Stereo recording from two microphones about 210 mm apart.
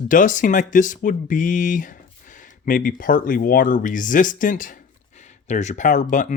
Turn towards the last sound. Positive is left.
turn(degrees=35)  # may be behind; listen again after turning